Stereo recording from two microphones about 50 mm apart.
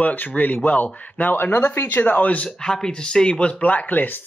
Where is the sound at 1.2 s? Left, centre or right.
Left.